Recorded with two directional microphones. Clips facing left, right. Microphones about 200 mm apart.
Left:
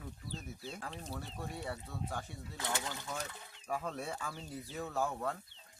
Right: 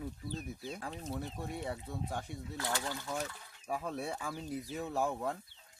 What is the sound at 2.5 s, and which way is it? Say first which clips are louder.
Speech: right 2 dB; 20° left (ahead or behind).